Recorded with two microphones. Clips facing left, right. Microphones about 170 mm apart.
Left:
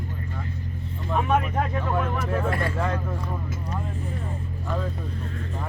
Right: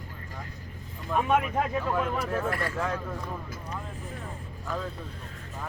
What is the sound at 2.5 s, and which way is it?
Speech, 20° left (ahead or behind).